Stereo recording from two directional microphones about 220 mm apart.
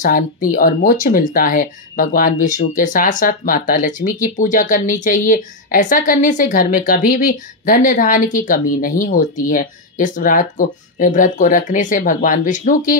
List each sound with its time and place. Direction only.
0.0 s speech: 40° left (ahead or behind)